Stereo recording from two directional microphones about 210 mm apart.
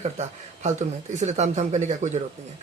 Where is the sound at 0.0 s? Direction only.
35° right (ahead or behind).